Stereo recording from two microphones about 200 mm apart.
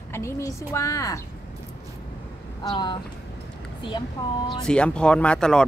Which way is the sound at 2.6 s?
25° left (ahead or behind).